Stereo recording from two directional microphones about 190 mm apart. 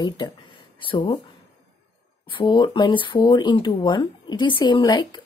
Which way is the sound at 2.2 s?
25° left (ahead or behind).